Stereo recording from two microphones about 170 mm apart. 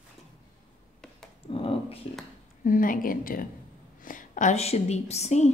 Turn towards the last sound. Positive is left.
turn(degrees=40)  # may be behind; listen again after turning